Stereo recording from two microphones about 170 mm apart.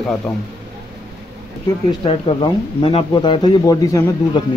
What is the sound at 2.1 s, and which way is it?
Speech, 30° left (ahead or behind).